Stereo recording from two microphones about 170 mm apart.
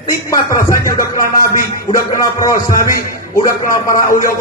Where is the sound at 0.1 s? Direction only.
20° left (ahead or behind).